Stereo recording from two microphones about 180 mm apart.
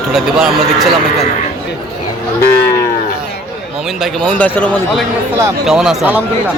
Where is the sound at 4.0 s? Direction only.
5° left (ahead or behind).